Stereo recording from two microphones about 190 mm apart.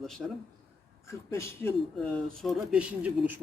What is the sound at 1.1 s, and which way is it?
Speech, 15° left (ahead or behind).